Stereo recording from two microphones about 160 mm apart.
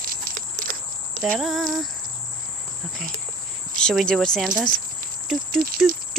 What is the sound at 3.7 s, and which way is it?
Speech, centre (ahead or behind).